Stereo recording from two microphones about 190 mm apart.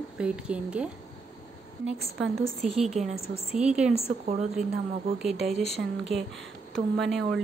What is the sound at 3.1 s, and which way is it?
Speech, 30° left (ahead or behind).